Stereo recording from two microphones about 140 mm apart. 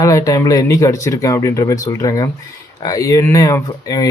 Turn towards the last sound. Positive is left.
turn(degrees=25)  # may be behind; listen again after turning